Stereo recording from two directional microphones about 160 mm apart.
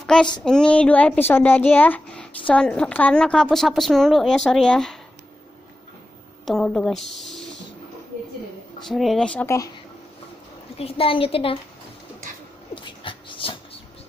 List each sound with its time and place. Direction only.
0.0 s a sound: 5° left (ahead or behind)
0.4 s a woman's voice: 5° left (ahead or behind)
6.4 s a woman's voice: centre (ahead or behind)
8.8 s a woman's voice: centre (ahead or behind)
10.8 s a woman's voice: 35° left (ahead or behind)
12.7 s dog: 30° left (ahead or behind)